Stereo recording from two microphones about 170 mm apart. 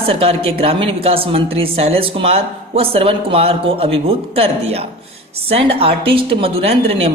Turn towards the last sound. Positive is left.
turn(degrees=-35)  # may be behind; listen again after turning